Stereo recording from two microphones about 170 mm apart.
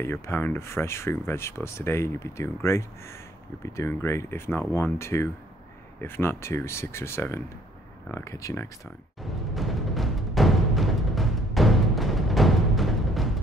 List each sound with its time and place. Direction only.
0.0 s speech: 15° left (ahead or behind)
9.2 s music: centre (ahead or behind)